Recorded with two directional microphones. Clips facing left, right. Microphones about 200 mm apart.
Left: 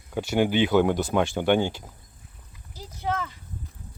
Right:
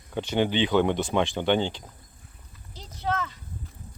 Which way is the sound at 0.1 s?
10° left (ahead or behind).